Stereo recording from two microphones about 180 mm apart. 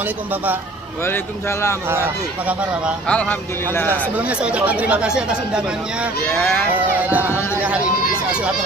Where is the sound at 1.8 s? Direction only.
15° right (ahead or behind).